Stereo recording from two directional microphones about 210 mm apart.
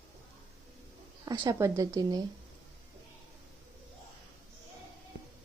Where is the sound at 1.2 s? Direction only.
20° right (ahead or behind).